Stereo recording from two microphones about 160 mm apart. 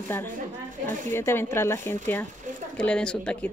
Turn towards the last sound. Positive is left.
turn(degrees=5)  # may be behind; listen again after turning